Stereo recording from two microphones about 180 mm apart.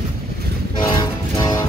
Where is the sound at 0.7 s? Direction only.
25° left (ahead or behind).